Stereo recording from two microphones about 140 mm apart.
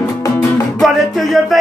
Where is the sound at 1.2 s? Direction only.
Centre (ahead or behind).